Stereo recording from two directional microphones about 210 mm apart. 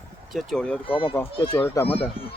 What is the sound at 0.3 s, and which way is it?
Speech, 5° left (ahead or behind).